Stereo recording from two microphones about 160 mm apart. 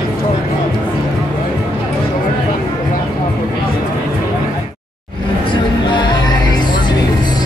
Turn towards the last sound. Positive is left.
turn(degrees=25)  # may be behind; listen again after turning